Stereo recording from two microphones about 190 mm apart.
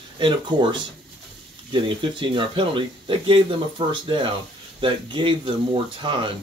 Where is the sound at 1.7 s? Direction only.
25° right (ahead or behind).